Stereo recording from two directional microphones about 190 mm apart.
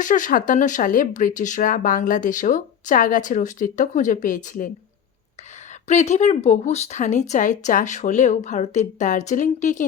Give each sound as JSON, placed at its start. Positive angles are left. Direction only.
{"t": 0.0, "sound": "speech", "side_deg": 45}
{"t": 5.9, "sound": "speech", "side_deg": 40}